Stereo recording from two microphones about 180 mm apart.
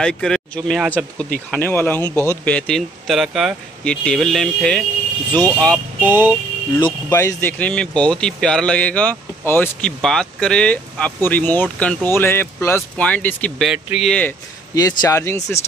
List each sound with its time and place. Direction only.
0.0 s speech: 5° left (ahead or behind)
5.9 s speech: 10° right (ahead or behind)
7.1 s speech: 15° left (ahead or behind)
13.7 s speech: 5° right (ahead or behind)
14.8 s speech: 20° left (ahead or behind)